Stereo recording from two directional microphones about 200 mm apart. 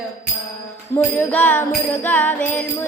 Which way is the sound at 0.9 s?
10° left (ahead or behind).